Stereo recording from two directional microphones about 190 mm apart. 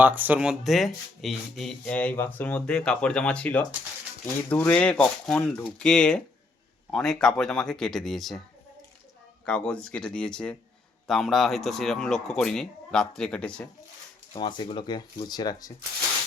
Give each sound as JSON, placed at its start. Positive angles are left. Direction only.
{"t": 0.0, "sound": "speech", "side_deg": -10}
{"t": 9.5, "sound": "speech", "side_deg": 5}
{"t": 14.3, "sound": "speech", "side_deg": 25}